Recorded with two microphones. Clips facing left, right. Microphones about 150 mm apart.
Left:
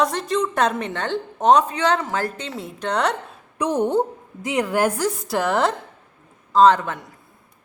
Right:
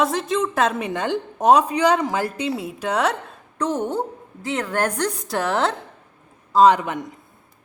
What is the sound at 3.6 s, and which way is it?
A woman's voice, 15° left (ahead or behind).